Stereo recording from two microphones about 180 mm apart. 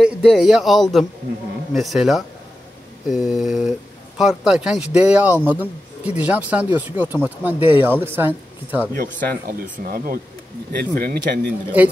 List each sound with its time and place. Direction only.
0.0 s speech: 5° right (ahead or behind)
9.0 s speech: 55° right (ahead or behind)